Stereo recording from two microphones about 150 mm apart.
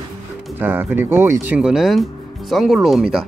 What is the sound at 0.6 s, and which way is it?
Speech, 15° right (ahead or behind).